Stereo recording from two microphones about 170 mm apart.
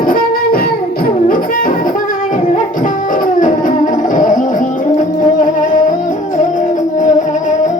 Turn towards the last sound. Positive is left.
turn(degrees=50)  # may be behind; listen again after turning